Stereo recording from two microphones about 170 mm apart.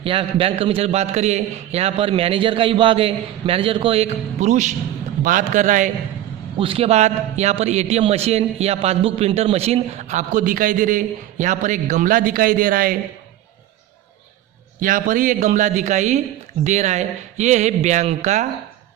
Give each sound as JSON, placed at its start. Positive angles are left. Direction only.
{"t": 0.0, "sound": "a man's voice", "side_deg": -30}
{"t": 6.6, "sound": "a man's voice", "side_deg": -35}
{"t": 14.8, "sound": "a man's voice", "side_deg": -50}